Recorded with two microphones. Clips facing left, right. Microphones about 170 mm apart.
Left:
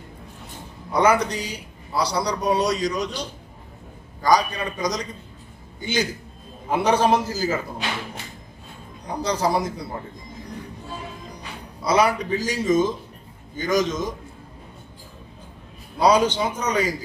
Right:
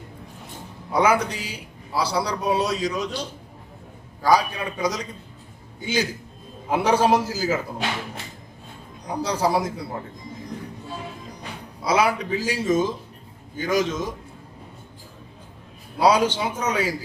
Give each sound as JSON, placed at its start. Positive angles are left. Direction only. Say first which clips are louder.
{"t": 0.9, "sound": "a man's voice", "louder": "left 1 dB", "side_deg": -5}
{"t": 4.2, "sound": "a man's voice", "louder": "even", "side_deg": -5}
{"t": 9.0, "sound": "a man's voice", "louder": "even", "side_deg": -5}
{"t": 11.8, "sound": "a man's voice", "louder": "left 1 dB", "side_deg": -5}
{"t": 16.0, "sound": "a man's voice", "louder": "left 1 dB", "side_deg": -5}